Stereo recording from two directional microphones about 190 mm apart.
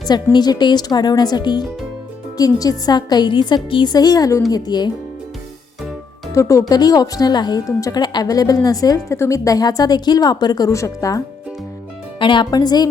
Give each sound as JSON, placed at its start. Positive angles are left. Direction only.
{"t": 0.0, "sound": "a woman's voice", "side_deg": 20}
{"t": 6.3, "sound": "a woman's voice", "side_deg": 15}
{"t": 12.2, "sound": "a woman's voice", "side_deg": 25}